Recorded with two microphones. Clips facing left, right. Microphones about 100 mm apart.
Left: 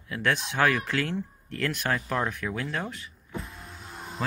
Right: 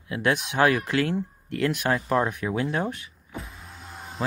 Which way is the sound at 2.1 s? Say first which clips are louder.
Right 5 dB; 20° right (ahead or behind).